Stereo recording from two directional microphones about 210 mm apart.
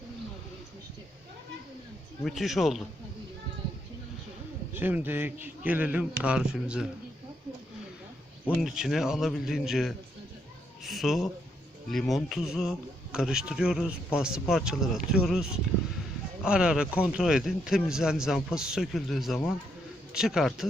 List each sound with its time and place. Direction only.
2.2 s speech: centre (ahead or behind)
4.7 s a man's voice: 10° right (ahead or behind)
8.6 s speech: centre (ahead or behind)